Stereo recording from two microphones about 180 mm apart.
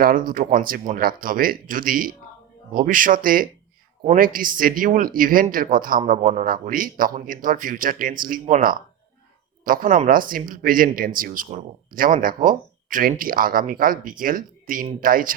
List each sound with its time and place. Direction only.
0.0 s speech: 50° right (ahead or behind)